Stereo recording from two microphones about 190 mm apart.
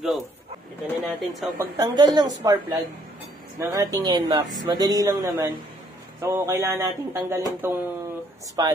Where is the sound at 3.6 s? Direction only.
15° right (ahead or behind).